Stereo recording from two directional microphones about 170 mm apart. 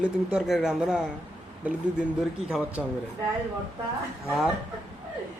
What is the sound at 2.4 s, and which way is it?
Speech, 5° right (ahead or behind).